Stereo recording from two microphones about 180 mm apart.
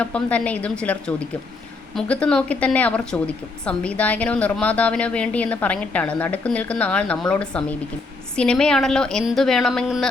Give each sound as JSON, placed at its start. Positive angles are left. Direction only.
{"t": 0.0, "sound": "a woman's voice", "side_deg": 5}